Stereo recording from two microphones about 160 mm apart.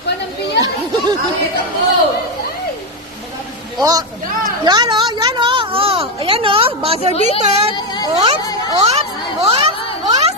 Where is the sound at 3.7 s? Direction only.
25° right (ahead or behind); by 7.7 s 45° right (ahead or behind).